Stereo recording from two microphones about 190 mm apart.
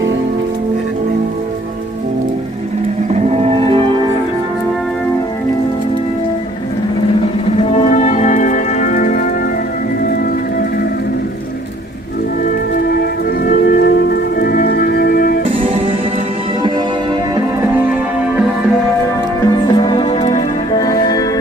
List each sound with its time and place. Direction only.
3.1 s music: 30° right (ahead or behind)
7.5 s music: 30° left (ahead or behind)
12.7 s music: 55° left (ahead or behind)
15.5 s music: 30° right (ahead or behind)
19.5 s music: 20° left (ahead or behind)
20.8 s music: 20° left (ahead or behind)